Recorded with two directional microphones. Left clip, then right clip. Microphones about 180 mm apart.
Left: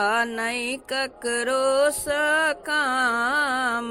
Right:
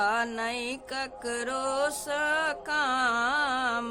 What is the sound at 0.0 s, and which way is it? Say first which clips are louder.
Music: left 5 dB; 20° left (ahead or behind).